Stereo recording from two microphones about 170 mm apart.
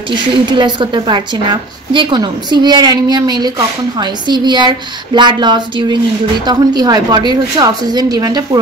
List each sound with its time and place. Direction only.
0.1 s a woman's voice: 25° right (ahead or behind)